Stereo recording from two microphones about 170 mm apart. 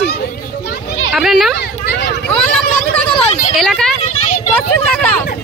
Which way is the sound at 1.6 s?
80° left.